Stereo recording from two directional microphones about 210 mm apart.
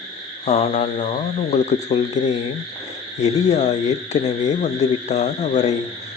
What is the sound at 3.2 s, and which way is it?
Speech, 35° left (ahead or behind).